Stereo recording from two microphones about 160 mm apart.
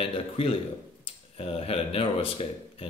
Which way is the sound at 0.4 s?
35° left (ahead or behind).